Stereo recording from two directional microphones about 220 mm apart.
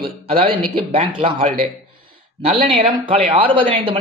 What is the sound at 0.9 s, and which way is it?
A man's voice, 25° right (ahead or behind).